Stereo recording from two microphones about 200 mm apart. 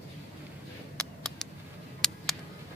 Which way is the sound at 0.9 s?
Centre (ahead or behind).